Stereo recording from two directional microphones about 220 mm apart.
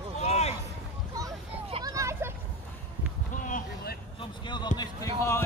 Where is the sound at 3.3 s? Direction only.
40° left (ahead or behind).